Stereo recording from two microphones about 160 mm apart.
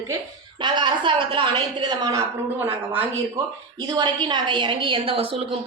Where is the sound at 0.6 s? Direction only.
30° right (ahead or behind).